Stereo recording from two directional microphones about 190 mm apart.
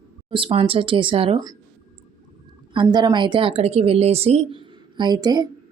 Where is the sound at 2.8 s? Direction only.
20° right (ahead or behind).